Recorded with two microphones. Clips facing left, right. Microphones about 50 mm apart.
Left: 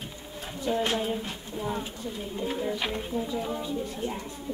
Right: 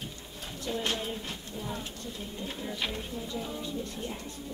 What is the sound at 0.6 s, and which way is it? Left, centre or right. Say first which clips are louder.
Speech: left 6 dB; centre.